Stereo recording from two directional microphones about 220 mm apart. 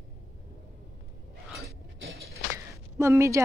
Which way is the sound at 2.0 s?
45° right (ahead or behind).